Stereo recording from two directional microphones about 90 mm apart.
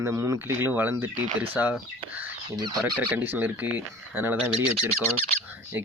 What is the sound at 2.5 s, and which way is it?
Speech, 50° right (ahead or behind).